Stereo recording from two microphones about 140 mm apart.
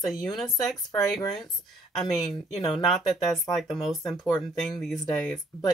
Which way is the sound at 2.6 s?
35° left (ahead or behind).